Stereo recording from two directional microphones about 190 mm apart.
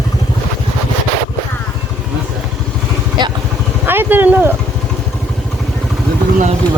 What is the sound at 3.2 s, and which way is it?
Vehicle, 25° right (ahead or behind).